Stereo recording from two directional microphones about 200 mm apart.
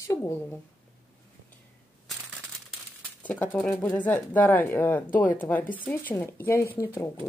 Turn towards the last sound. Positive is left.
turn(degrees=15)  # may be behind; listen again after turning